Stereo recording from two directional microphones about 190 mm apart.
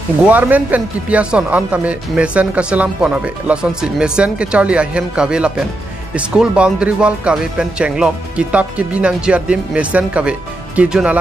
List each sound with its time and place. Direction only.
0.3 s speech: 10° right (ahead or behind)